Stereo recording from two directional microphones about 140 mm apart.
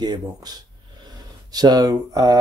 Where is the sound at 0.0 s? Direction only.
30° right (ahead or behind).